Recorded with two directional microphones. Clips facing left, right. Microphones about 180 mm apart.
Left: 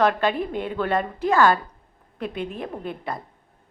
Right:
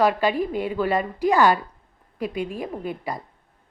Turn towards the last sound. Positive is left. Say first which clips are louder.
# right 1 dB
turn(degrees=-5)  # may be behind; listen again after turning